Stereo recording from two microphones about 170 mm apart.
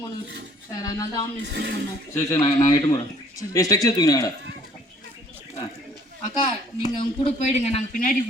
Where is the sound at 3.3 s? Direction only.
20° left (ahead or behind).